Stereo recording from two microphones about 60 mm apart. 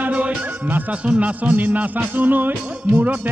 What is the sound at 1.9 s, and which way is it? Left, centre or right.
Speech, right.